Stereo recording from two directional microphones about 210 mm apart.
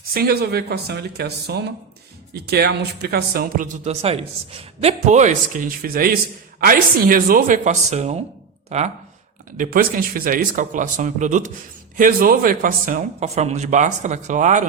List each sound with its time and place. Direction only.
0.1 s speech: 45° right (ahead or behind)
3.8 s speech: 30° right (ahead or behind)